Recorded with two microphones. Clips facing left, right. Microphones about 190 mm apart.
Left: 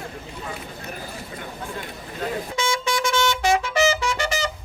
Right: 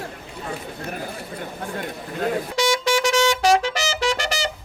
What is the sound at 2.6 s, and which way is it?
Vehicle, 80° right.